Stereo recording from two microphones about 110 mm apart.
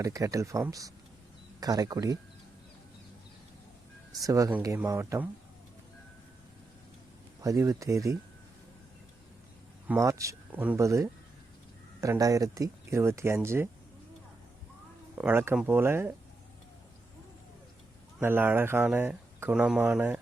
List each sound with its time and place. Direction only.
0.0 s speech: 30° right (ahead or behind)
4.1 s speech: 30° right (ahead or behind)
7.4 s speech: 30° right (ahead or behind)
10.0 s speech: 30° right (ahead or behind)
10.5 s speech: 15° right (ahead or behind)
10.8 s speech: 25° right (ahead or behind)
15.1 s speech: 20° right (ahead or behind)
18.2 s speech: 20° right (ahead or behind)
19.5 s speech: 10° right (ahead or behind)